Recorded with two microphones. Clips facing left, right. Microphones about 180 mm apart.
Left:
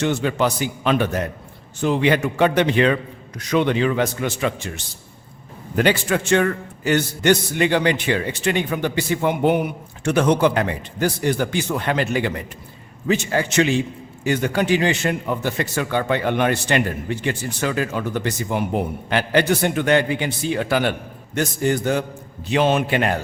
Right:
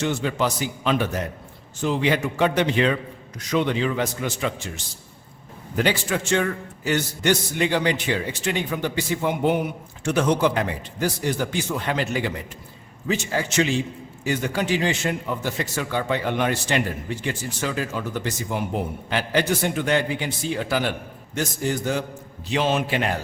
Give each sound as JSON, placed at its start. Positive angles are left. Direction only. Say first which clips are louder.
{"t": 0.0, "sound": "a man's voice", "louder": "left 3 dB", "side_deg": 60}
{"t": 5.7, "sound": "a man's voice", "louder": "left 4 dB", "side_deg": 60}